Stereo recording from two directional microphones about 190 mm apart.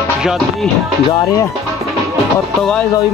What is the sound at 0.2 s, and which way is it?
Music, centre (ahead or behind).